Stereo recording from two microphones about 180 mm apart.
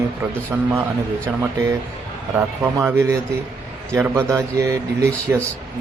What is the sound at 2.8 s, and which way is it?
A man's voice, 15° right (ahead or behind).